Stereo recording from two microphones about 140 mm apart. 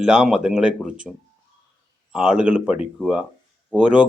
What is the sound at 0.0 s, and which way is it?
Speech, 5° right (ahead or behind).